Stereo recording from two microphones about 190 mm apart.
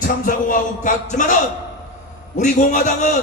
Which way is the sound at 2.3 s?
40° left (ahead or behind).